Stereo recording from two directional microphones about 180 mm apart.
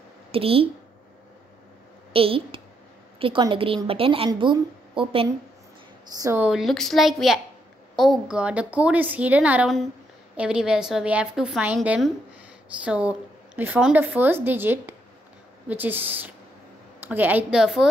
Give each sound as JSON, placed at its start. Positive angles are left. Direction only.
{"t": 0.3, "sound": "speech", "side_deg": -30}
{"t": 2.1, "sound": "a woman's voice", "side_deg": -30}
{"t": 6.1, "sound": "a woman's voice", "side_deg": -20}
{"t": 6.4, "sound": "a woman's voice", "side_deg": 0}